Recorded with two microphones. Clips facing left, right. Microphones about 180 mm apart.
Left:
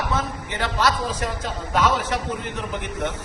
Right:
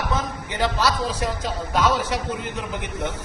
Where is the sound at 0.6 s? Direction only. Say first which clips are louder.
Right 1 dB; 10° right (ahead or behind).